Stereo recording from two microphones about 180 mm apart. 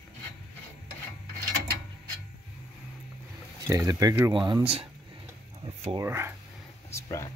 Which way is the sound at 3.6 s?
20° right (ahead or behind).